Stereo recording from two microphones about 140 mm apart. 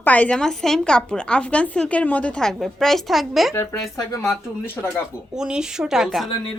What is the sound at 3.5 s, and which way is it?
Speech, 20° left (ahead or behind).